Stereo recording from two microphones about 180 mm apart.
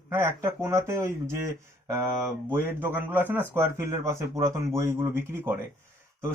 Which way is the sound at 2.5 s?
10° right (ahead or behind).